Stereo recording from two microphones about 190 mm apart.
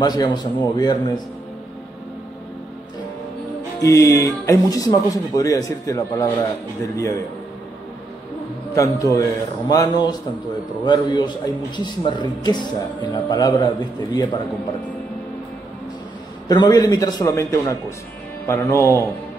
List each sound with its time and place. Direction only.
0.0 s a man's voice: 20° left (ahead or behind)
3.8 s speech: 15° left (ahead or behind)
8.7 s a man's voice: 15° left (ahead or behind)
16.4 s a man's voice: 20° left (ahead or behind)